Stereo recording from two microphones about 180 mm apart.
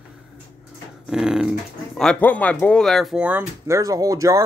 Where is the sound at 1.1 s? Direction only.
5° right (ahead or behind).